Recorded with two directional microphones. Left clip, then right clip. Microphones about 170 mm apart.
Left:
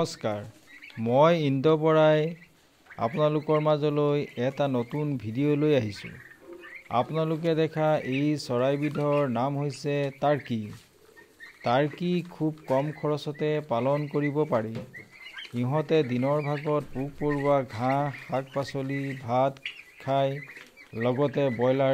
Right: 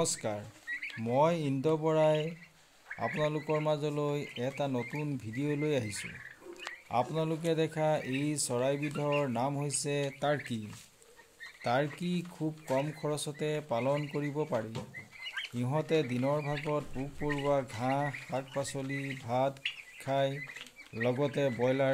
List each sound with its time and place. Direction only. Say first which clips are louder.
0.0 s speech: left 4 dB; 20° left (ahead or behind)
11.6 s speech: left 6 dB; 25° left (ahead or behind)